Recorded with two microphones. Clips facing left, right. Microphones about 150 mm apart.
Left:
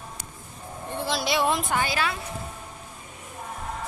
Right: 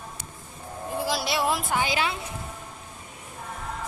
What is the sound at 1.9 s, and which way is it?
Speech, 25° right (ahead or behind).